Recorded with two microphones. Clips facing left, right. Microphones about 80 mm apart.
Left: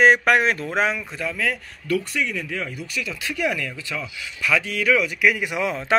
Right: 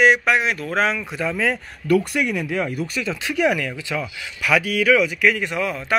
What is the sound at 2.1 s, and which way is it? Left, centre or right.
Speech, right.